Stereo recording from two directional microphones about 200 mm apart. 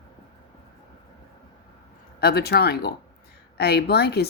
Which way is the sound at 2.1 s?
50° left (ahead or behind).